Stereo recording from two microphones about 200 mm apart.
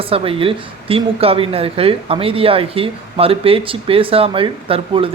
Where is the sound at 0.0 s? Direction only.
30° right (ahead or behind).